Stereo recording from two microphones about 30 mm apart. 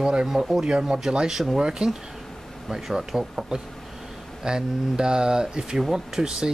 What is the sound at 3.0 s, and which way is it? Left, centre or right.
Speech, centre.